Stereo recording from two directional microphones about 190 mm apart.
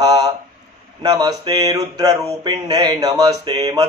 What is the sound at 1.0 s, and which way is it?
A man's voice, 20° right (ahead or behind).